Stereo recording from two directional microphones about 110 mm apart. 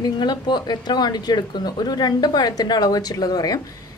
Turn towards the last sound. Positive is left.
turn(degrees=35)  # may be behind; listen again after turning